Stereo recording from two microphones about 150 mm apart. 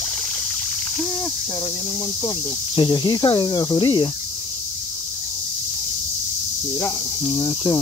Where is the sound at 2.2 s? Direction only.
30° left (ahead or behind).